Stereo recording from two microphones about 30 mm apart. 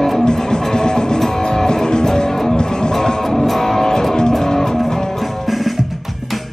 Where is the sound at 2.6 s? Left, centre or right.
Left.